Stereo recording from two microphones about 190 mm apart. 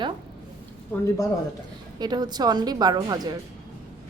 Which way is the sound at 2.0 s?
20° right (ahead or behind).